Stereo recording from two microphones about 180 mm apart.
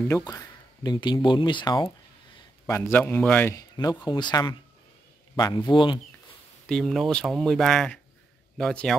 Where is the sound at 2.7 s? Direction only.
15° left (ahead or behind).